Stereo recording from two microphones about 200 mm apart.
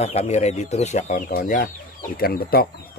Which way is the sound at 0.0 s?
35° left (ahead or behind).